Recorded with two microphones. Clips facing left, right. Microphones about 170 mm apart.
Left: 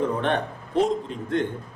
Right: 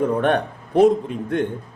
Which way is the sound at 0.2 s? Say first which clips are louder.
Right 5 dB; 60° right (ahead or behind).